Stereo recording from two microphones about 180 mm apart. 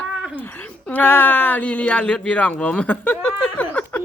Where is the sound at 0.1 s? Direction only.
5° right (ahead or behind).